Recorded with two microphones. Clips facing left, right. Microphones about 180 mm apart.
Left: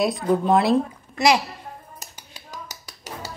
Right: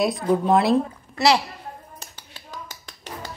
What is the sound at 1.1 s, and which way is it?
Speech, 15° left (ahead or behind).